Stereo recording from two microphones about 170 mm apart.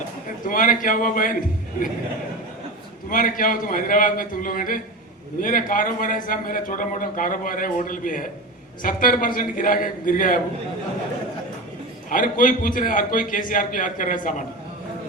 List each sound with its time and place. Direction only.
0.4 s a man's voice: 55° left (ahead or behind)
3.1 s a man's voice: 55° left (ahead or behind)
12.0 s a man's voice: 50° left (ahead or behind)